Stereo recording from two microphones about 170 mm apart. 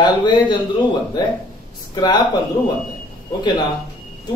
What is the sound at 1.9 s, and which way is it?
Speech, 25° left (ahead or behind).